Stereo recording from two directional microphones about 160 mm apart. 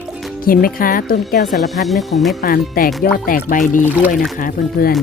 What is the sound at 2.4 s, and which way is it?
Speech, 65° left (ahead or behind).